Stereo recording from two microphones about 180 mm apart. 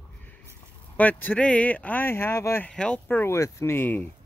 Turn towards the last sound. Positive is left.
turn(degrees=10)  # may be behind; listen again after turning